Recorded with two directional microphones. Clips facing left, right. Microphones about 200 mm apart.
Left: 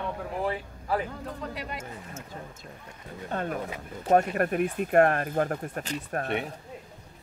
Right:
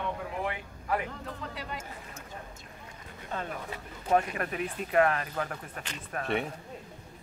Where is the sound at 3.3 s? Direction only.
50° left (ahead or behind).